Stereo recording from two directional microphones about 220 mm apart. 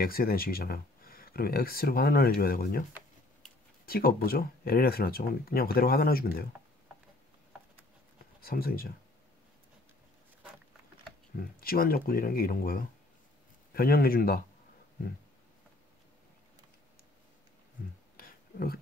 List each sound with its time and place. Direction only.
0.0 s speech: 40° left (ahead or behind)
3.8 s speech: 45° left (ahead or behind)
8.5 s speech: 45° left (ahead or behind)
11.3 s speech: 40° left (ahead or behind)
18.1 s a sound: 45° left (ahead or behind)